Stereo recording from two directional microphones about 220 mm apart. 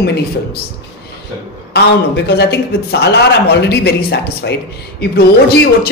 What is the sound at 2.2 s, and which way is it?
Speech, 50° left (ahead or behind).